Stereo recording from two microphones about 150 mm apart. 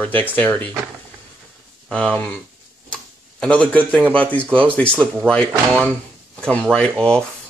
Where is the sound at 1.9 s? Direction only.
10° left (ahead or behind).